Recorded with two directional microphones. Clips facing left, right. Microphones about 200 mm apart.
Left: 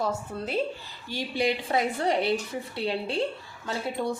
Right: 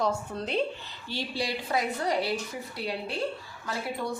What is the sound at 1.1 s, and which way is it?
A woman's voice, 15° left (ahead or behind).